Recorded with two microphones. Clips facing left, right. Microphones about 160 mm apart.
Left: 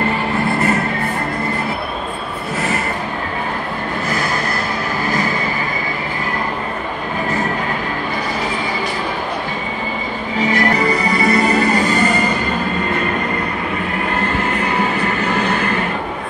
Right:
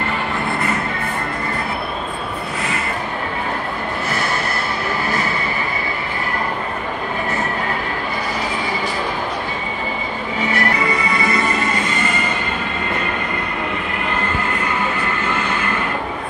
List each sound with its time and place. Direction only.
10.5 s music: 35° left (ahead or behind)
14.8 s music: 40° left (ahead or behind)